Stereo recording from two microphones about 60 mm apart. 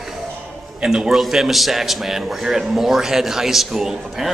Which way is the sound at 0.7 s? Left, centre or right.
Centre.